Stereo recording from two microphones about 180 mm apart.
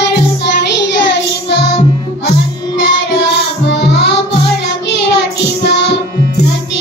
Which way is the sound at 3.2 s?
75° left (ahead or behind).